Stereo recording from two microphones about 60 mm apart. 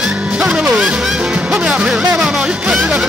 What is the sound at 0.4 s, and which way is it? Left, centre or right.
Music, centre.